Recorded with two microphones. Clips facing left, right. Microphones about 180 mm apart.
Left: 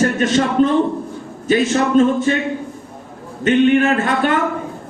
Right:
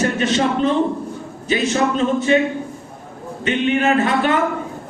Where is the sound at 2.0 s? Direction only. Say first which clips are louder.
Left 7 dB; 45° left (ahead or behind).